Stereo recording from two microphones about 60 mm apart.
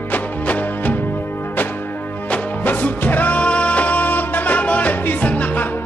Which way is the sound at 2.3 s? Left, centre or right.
Left.